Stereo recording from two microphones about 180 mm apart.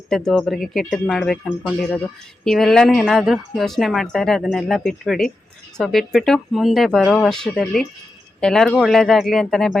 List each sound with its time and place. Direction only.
0.1 s a woman's voice: centre (ahead or behind)